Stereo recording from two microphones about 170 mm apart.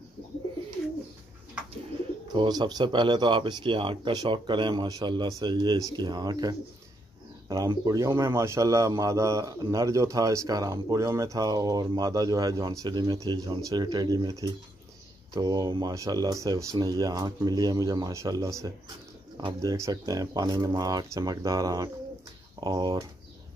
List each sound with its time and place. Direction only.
2.3 s a man's voice: 25° right (ahead or behind)